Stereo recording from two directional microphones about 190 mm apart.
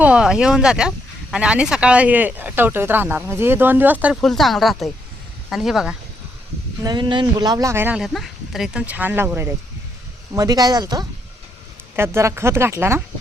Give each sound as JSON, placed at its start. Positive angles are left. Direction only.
{"t": 0.0, "sound": "speech", "side_deg": -5}
{"t": 6.8, "sound": "speech", "side_deg": -25}